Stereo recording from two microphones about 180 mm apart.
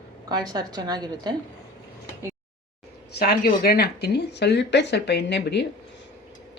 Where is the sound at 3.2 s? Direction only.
60° left (ahead or behind).